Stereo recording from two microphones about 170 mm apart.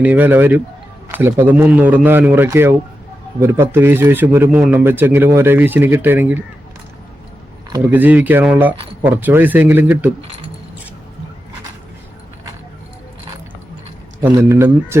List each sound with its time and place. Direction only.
0.0 s a man's voice: 10° right (ahead or behind)
7.9 s a man's voice: 10° right (ahead or behind)
14.3 s a man's voice: 15° right (ahead or behind)